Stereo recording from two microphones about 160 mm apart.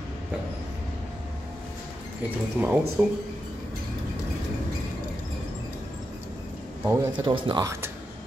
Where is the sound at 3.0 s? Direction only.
15° right (ahead or behind).